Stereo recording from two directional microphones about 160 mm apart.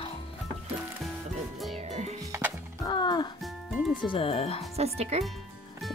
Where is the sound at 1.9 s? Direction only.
40° right (ahead or behind).